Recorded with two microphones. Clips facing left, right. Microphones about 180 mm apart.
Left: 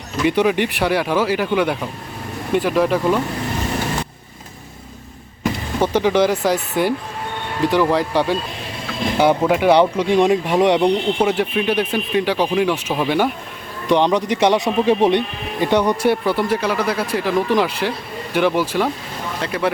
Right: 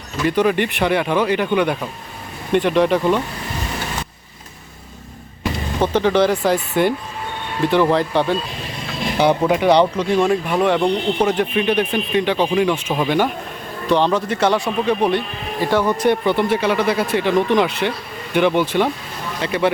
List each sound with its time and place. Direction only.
0.3 s speech: 10° left (ahead or behind)
5.8 s speech: 10° left (ahead or behind)